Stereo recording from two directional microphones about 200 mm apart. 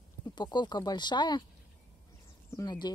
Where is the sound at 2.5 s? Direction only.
20° left (ahead or behind).